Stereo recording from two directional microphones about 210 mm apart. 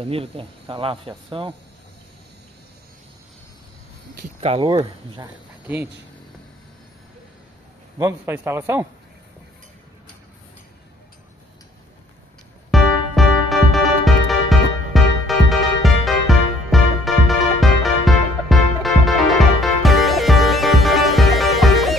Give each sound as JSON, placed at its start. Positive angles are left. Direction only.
{"t": 0.0, "sound": "speech", "side_deg": -25}
{"t": 4.4, "sound": "speech", "side_deg": -25}
{"t": 8.0, "sound": "speech", "side_deg": -10}
{"t": 12.7, "sound": "music", "side_deg": 0}